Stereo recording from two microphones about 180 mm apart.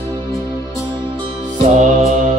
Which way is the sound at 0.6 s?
15° left (ahead or behind).